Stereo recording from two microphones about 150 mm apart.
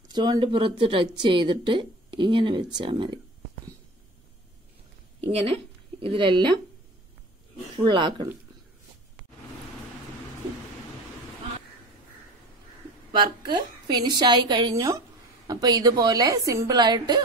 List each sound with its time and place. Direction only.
0.1 s speech: 30° right (ahead or behind)
5.2 s speech: 40° right (ahead or behind)
7.7 s speech: 30° right (ahead or behind)
13.5 s a woman's voice: 30° right (ahead or behind)